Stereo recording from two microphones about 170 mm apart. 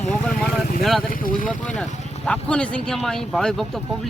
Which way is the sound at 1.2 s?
55° left (ahead or behind).